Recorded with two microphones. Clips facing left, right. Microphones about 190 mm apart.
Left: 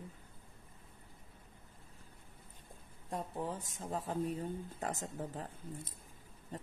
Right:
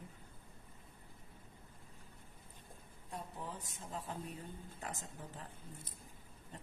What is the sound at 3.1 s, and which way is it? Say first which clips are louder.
Speech: left 7 dB; 40° left (ahead or behind).